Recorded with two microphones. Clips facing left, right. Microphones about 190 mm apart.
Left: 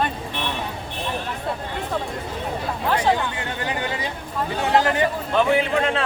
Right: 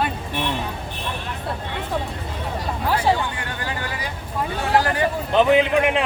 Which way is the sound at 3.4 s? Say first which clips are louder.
Left 2 dB; 25° left (ahead or behind).